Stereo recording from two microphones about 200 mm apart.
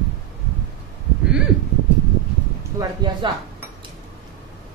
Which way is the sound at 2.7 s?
20° right (ahead or behind).